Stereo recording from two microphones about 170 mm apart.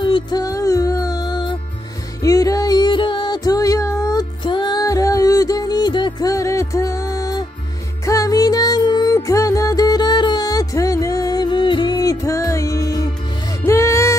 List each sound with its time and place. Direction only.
0.0 s music: 25° left (ahead or behind)